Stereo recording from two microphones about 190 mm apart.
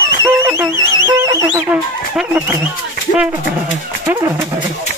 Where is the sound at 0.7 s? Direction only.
90° left.